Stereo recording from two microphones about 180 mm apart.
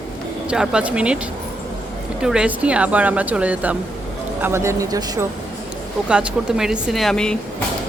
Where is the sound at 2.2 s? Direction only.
5° right (ahead or behind).